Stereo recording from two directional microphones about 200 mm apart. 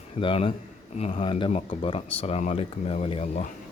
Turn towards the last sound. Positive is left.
turn(degrees=35)  # may be behind; listen again after turning